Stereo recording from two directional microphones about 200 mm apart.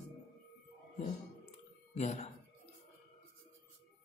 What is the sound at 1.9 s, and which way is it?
Speech, 35° left (ahead or behind).